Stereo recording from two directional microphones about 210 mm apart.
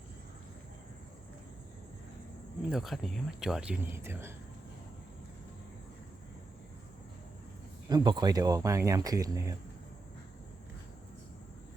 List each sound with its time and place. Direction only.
2.6 s speech: centre (ahead or behind)
7.9 s speech: 20° right (ahead or behind)